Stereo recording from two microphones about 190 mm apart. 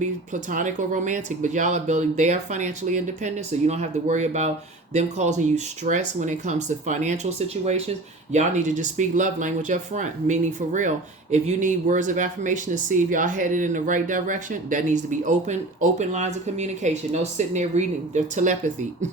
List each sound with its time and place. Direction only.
0.3 s speech: 40° right (ahead or behind)